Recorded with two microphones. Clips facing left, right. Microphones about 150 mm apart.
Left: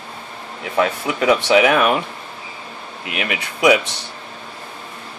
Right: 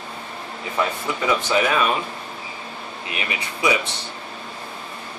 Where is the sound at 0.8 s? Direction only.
75° left (ahead or behind).